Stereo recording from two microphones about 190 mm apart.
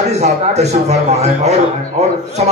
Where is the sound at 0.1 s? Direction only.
35° right (ahead or behind).